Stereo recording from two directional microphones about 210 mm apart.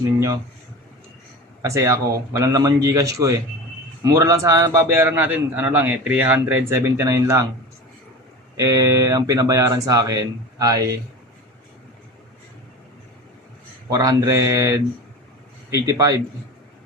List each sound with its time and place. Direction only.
1.6 s a man's voice: 15° right (ahead or behind)
8.5 s a man's voice: 15° right (ahead or behind)
13.9 s a man's voice: 15° right (ahead or behind)
15.9 s a man's voice: 15° right (ahead or behind)